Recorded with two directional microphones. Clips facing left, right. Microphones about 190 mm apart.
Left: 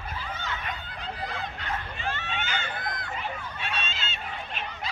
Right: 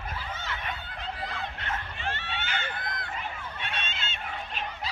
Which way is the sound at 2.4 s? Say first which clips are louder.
Even; 55° right (ahead or behind).